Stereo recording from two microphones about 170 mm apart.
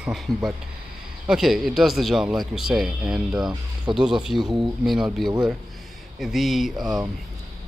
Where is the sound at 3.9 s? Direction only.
30° right (ahead or behind).